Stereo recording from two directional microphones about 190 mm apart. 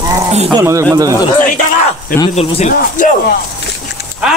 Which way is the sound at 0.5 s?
15° right (ahead or behind).